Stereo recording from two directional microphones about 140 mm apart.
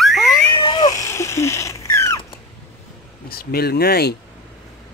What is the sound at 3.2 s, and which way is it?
Speech, 90° left.